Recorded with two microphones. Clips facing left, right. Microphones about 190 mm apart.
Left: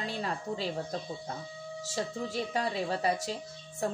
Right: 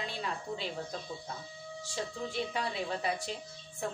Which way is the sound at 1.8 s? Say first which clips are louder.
Left 3 dB; 40° left (ahead or behind).